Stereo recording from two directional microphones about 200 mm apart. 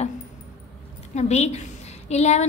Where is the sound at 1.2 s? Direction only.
35° left (ahead or behind).